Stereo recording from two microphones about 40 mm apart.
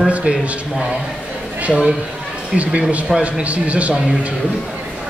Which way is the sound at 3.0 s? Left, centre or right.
Right.